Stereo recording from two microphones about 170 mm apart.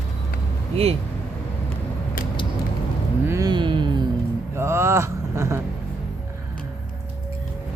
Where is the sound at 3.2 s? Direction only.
20° right (ahead or behind).